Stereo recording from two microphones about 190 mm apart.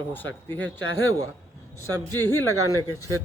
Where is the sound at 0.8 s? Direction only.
90° left.